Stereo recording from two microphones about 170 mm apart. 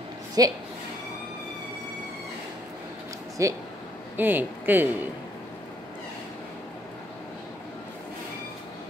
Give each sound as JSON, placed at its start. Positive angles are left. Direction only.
{"t": 0.4, "sound": "a woman's voice", "side_deg": -20}
{"t": 3.4, "sound": "speech", "side_deg": -15}